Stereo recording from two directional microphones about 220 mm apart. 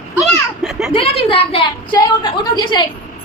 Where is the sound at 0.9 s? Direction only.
25° left (ahead or behind).